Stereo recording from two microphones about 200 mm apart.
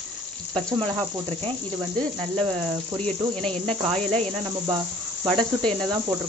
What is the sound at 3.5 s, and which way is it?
Cricket, 25° right (ahead or behind).